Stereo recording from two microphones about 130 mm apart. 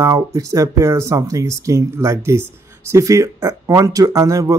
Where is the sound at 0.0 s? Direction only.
25° right (ahead or behind).